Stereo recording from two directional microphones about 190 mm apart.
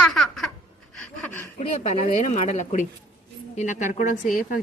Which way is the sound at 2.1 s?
40° left (ahead or behind).